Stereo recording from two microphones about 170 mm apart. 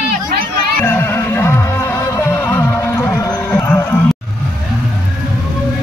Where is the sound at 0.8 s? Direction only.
10° left (ahead or behind).